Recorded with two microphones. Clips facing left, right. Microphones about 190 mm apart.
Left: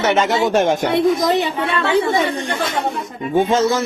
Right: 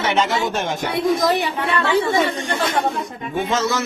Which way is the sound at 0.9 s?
20° left (ahead or behind).